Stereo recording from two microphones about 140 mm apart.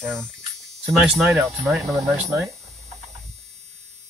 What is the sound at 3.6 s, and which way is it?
Hum, 55° right (ahead or behind).